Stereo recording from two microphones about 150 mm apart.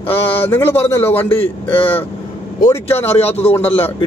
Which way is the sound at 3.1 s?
45° left (ahead or behind).